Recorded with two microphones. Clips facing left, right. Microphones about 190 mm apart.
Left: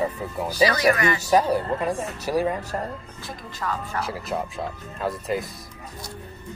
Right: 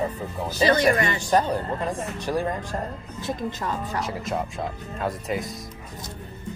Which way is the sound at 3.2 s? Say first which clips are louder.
Right 4 dB; 20° right (ahead or behind).